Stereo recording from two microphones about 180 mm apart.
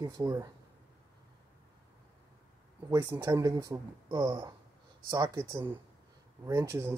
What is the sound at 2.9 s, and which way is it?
Speech, 20° right (ahead or behind).